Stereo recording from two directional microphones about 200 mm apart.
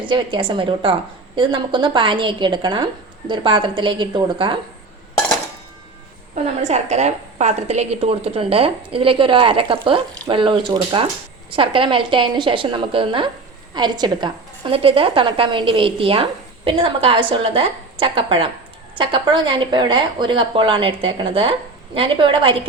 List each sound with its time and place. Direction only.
0.0 s a woman's voice: 25° right (ahead or behind)
6.3 s a woman's voice: 35° right (ahead or behind)